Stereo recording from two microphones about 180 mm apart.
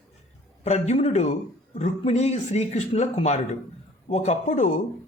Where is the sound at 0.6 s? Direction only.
35° left (ahead or behind).